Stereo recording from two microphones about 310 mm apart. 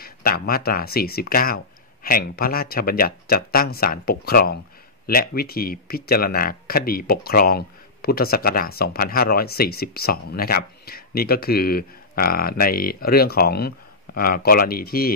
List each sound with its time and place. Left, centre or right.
0.0 s speech: left